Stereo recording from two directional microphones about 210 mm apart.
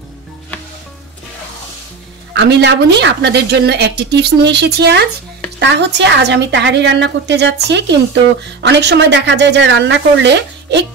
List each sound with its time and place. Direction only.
2.3 s a woman's voice: 55° right (ahead or behind)